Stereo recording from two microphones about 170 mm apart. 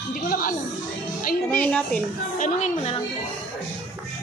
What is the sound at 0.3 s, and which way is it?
Speech, 55° left (ahead or behind).